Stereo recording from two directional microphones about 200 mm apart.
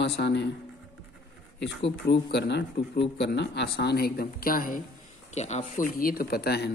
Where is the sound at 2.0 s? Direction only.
60° left (ahead or behind).